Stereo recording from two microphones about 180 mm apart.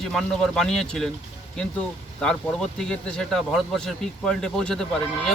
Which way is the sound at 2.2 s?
5° left (ahead or behind).